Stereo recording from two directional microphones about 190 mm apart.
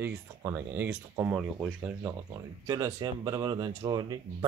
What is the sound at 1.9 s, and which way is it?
Speech, 15° right (ahead or behind).